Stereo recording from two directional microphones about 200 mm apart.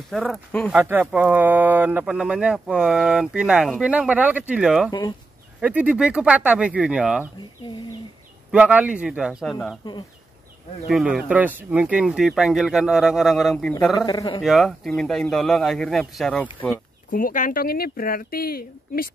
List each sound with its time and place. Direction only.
0.1 s speech: centre (ahead or behind)
0.7 s speech: 10° right (ahead or behind)
8.5 s speech: 5° right (ahead or behind)
10.9 s speech: 5° right (ahead or behind)
13.9 s a man's voice: 20° left (ahead or behind)
14.4 s speech: centre (ahead or behind)
17.1 s speech: 40° left (ahead or behind)